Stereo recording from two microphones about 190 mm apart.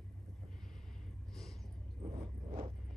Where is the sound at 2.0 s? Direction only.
30° right (ahead or behind).